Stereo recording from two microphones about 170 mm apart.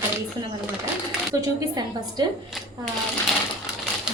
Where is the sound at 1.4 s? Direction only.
20° right (ahead or behind).